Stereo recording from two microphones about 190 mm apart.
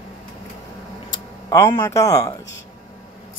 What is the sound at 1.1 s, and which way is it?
Speech, 20° left (ahead or behind).